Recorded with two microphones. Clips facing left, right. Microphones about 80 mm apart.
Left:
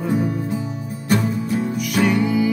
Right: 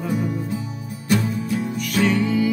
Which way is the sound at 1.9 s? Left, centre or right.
Centre.